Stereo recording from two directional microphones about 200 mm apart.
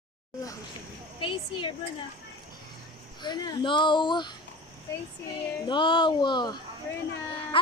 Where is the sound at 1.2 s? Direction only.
25° left (ahead or behind).